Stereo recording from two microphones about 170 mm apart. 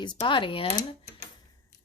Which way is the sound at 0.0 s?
25° left (ahead or behind).